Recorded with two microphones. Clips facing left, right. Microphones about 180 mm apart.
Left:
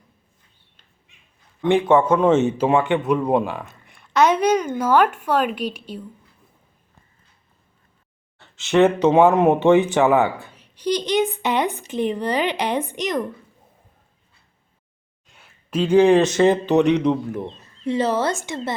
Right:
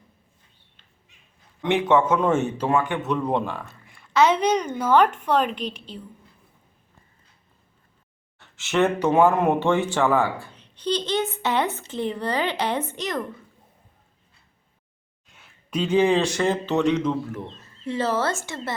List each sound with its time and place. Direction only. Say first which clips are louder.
2.0 s speech: left 5 dB; 15° left (ahead or behind)
3.1 s a woman's voice: left 5 dB; 10° left (ahead or behind)
8.7 s speech: left 5 dB; 20° left (ahead or behind)
10.5 s a woman's voice: left 3 dB; 10° left (ahead or behind)
16.0 s a woman's voice: left 6 dB; 15° left (ahead or behind)